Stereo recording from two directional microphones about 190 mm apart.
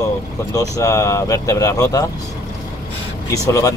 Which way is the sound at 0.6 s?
15° left (ahead or behind).